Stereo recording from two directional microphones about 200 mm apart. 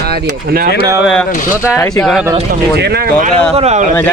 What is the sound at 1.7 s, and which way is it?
Speech, 15° left (ahead or behind).